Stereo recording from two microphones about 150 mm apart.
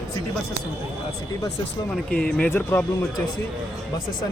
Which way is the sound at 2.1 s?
10° left (ahead or behind).